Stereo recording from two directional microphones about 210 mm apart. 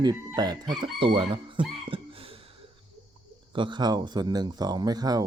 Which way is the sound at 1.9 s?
25° right (ahead or behind).